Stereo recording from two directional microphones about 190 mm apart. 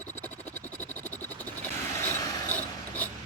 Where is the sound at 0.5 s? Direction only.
10° left (ahead or behind).